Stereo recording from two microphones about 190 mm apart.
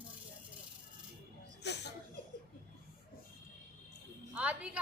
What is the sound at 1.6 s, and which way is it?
Chuckle, 60° left (ahead or behind).